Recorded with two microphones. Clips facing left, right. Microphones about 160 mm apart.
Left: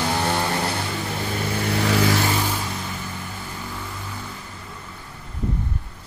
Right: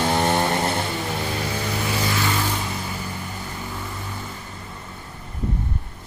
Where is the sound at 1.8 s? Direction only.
90° left.